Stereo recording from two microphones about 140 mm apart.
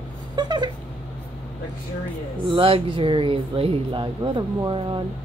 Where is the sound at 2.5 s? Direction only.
40° right (ahead or behind).